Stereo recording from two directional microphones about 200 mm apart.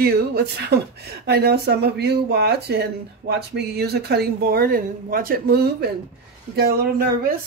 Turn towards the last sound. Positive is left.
turn(degrees=-50)  # may be behind; listen again after turning